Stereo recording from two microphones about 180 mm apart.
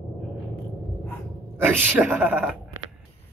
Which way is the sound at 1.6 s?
10° right (ahead or behind).